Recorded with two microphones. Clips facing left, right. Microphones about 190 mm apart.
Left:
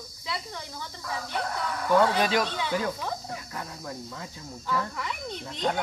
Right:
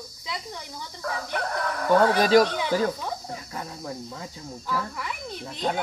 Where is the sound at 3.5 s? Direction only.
25° right (ahead or behind).